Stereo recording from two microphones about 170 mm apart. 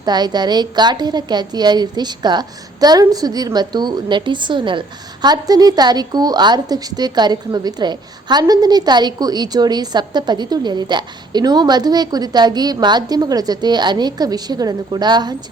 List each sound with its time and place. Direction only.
0.0 s a woman's voice: 25° right (ahead or behind)